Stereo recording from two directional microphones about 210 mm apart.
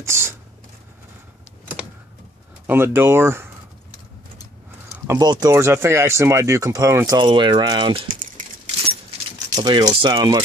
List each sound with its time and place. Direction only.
0.0 s speech: 10° right (ahead or behind)
2.6 s speech: 10° right (ahead or behind)
4.9 s speech: 15° right (ahead or behind)
8.1 s a sound: 40° right (ahead or behind)
9.6 s speech: 20° right (ahead or behind)